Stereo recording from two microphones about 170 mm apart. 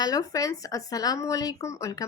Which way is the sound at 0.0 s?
20° left (ahead or behind).